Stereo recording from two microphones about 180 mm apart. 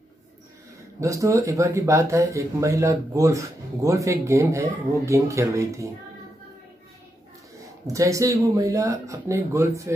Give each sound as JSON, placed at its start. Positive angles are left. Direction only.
{"t": 1.0, "sound": "speech", "side_deg": -15}
{"t": 7.8, "sound": "speech", "side_deg": -20}